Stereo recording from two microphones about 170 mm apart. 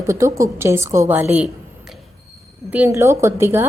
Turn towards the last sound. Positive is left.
turn(degrees=-15)  # may be behind; listen again after turning